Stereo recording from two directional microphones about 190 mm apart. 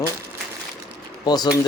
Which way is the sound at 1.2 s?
20° left (ahead or behind).